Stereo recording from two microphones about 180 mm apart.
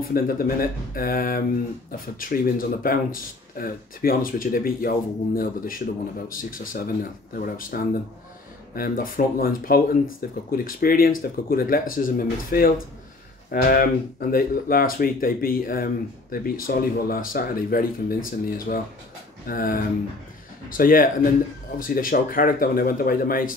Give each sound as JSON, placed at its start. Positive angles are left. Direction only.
{"t": 0.0, "sound": "speech", "side_deg": 55}